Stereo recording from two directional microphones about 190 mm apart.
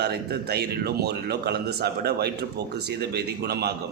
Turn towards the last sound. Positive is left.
turn(degrees=-55)  # may be behind; listen again after turning